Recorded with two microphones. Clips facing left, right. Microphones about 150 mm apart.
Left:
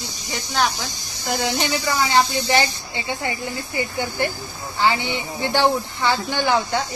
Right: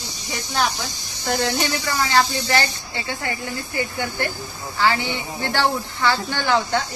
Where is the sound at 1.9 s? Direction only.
20° left (ahead or behind).